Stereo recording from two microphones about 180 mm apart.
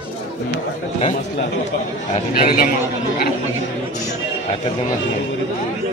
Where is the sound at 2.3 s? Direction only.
55° left (ahead or behind).